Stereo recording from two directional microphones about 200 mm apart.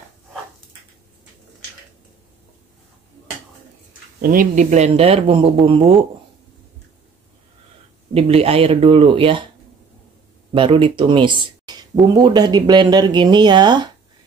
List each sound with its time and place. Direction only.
4.2 s speech: 45° right (ahead or behind); by 5.9 s 25° right (ahead or behind)
8.1 s speech: 30° right (ahead or behind)
10.5 s speech: 25° right (ahead or behind)